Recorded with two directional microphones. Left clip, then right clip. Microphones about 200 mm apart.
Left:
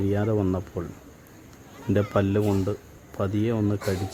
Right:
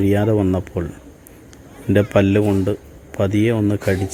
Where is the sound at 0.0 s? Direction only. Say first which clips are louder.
Right 8 dB; 10° right (ahead or behind).